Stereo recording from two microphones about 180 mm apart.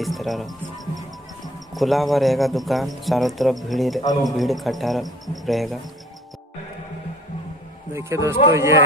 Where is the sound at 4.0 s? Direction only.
20° left (ahead or behind).